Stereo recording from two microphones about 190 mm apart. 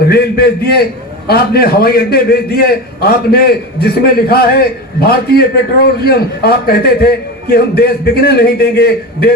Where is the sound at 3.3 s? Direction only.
55° left (ahead or behind).